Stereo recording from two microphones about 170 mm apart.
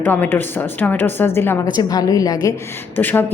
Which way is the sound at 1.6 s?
25° left (ahead or behind).